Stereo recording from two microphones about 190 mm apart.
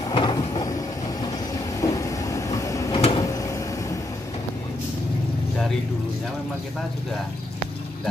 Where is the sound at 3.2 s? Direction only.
15° left (ahead or behind).